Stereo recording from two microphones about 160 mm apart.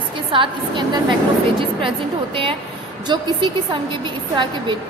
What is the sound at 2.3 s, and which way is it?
A woman's voice, 35° right (ahead or behind).